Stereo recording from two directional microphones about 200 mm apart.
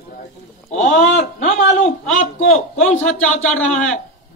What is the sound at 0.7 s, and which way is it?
Speech, 40° left (ahead or behind).